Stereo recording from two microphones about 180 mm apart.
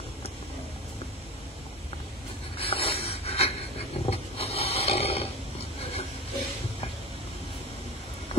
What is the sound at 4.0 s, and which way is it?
Roaring cats, 35° left (ahead or behind).